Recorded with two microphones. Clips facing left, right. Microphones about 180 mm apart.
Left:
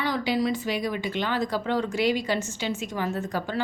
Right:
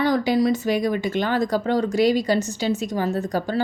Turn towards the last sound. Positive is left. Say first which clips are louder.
# right 5 dB
turn(degrees=-40)  # may be behind; listen again after turning